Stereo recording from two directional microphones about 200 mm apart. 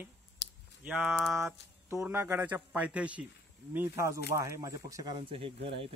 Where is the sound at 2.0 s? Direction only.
10° right (ahead or behind).